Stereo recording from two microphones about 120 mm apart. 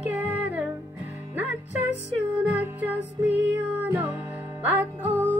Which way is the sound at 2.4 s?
15° right (ahead or behind).